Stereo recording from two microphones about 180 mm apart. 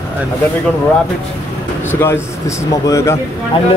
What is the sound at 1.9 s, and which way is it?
Speech, 15° left (ahead or behind).